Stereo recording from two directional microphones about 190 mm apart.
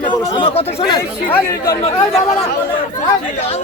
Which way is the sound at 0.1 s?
20° left (ahead or behind).